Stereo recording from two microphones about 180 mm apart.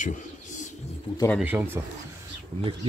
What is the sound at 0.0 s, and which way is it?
Bird, 45° left (ahead or behind).